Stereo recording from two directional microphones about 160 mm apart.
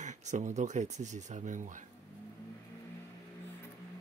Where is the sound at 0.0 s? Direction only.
50° right (ahead or behind).